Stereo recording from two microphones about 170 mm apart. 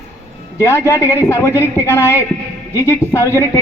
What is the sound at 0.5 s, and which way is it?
A man's voice, 15° left (ahead or behind).